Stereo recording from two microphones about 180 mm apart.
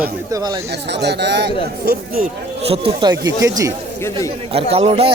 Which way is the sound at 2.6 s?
30° right (ahead or behind).